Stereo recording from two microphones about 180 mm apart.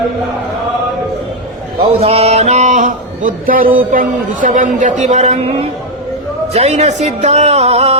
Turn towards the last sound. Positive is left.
turn(degrees=-35)  # may be behind; listen again after turning